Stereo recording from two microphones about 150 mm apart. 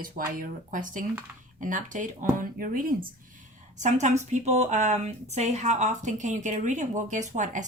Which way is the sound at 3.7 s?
50° right (ahead or behind).